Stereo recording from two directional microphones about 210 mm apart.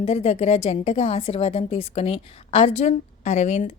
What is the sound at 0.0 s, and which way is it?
A woman's voice, 30° left (ahead or behind).